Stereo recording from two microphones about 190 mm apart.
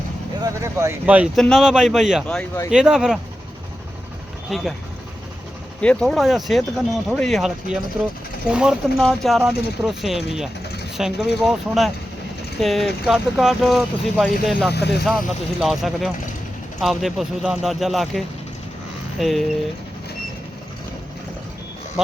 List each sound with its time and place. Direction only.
0.4 s speech: 15° right (ahead or behind)
4.4 s speech: centre (ahead or behind)
5.8 s speech: 5° left (ahead or behind)
14.7 s speech: 60° left (ahead or behind)
15.0 s speech: centre (ahead or behind)
19.2 s speech: centre (ahead or behind)